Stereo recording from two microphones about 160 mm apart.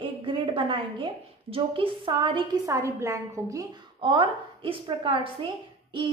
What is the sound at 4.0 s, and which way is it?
A woman's voice, 30° right (ahead or behind).